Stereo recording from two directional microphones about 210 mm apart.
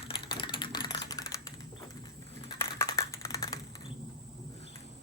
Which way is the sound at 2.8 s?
15° left (ahead or behind).